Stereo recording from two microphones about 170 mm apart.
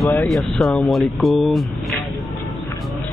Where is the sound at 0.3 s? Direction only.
Centre (ahead or behind).